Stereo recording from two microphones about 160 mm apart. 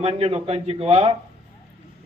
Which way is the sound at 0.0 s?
35° right (ahead or behind).